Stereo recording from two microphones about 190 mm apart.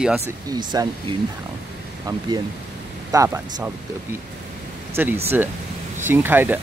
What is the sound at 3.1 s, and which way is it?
Speech, 15° right (ahead or behind).